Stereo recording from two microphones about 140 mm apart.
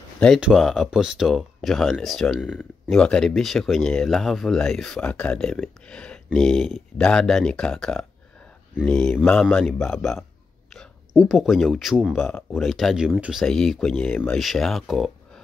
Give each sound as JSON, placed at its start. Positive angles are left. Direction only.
{"t": 0.4, "sound": "speech", "side_deg": 0}